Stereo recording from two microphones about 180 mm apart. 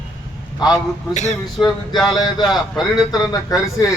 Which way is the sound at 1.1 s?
40° left (ahead or behind).